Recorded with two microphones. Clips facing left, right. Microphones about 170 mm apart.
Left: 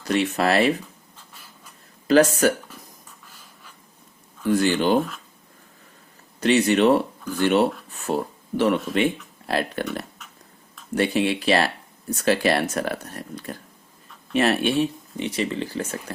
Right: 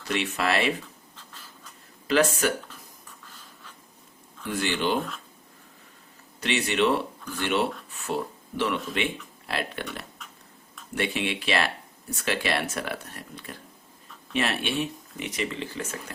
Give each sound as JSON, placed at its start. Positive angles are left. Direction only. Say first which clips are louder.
{"t": 0.1, "sound": "speech", "louder": "left 6 dB", "side_deg": 40}
{"t": 2.0, "sound": "speech", "louder": "left 6 dB", "side_deg": 40}
{"t": 4.4, "sound": "speech", "louder": "left 7 dB", "side_deg": 40}
{"t": 6.4, "sound": "speech", "louder": "left 7 dB", "side_deg": 40}